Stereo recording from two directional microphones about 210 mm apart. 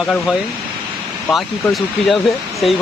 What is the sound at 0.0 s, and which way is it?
Speech, 5° left (ahead or behind).